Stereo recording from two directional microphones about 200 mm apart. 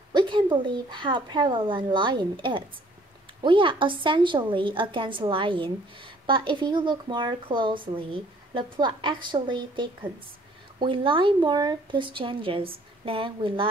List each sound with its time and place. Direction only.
0.1 s a woman's voice: 25° right (ahead or behind)